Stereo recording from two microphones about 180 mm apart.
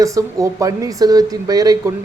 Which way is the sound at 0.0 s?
20° right (ahead or behind).